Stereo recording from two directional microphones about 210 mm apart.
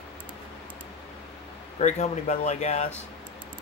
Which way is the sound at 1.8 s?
35° left (ahead or behind).